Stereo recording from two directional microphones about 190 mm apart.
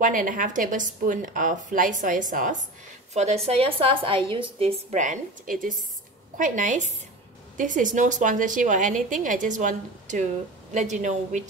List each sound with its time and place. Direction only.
0.0 s a woman's voice: 45° right (ahead or behind)